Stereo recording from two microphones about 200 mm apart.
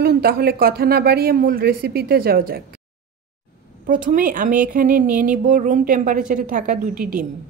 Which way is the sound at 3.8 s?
40° right (ahead or behind).